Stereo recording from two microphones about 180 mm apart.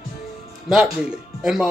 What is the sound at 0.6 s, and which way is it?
Speech, centre (ahead or behind).